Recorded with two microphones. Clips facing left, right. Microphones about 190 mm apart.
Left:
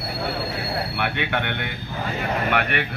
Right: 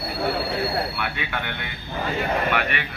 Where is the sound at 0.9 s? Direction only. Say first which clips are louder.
Left 4 dB; 65° left (ahead or behind).